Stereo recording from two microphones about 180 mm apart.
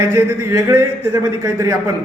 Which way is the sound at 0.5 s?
15° right (ahead or behind).